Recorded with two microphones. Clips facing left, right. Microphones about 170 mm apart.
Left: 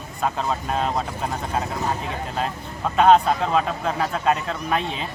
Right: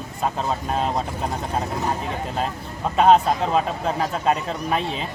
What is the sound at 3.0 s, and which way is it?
Speech, centre (ahead or behind).